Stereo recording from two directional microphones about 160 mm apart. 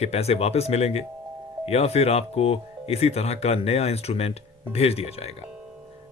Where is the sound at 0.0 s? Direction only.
40° left (ahead or behind).